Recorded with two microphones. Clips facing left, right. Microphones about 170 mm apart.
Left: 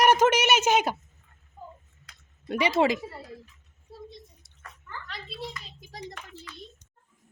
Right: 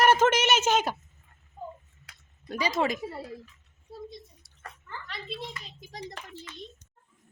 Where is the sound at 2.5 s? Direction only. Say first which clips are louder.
Left 4 dB; 25° left (ahead or behind).